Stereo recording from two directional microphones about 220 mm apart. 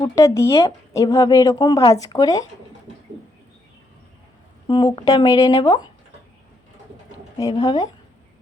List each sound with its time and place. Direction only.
0.0 s speech: 15° left (ahead or behind)
4.7 s speech: 20° left (ahead or behind)
7.6 s speech: 15° left (ahead or behind)